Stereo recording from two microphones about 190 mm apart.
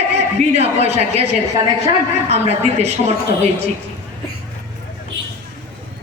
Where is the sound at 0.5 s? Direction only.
35° right (ahead or behind).